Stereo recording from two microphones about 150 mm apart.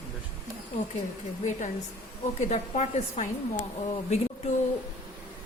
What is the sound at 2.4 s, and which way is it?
A woman's voice, 50° left (ahead or behind).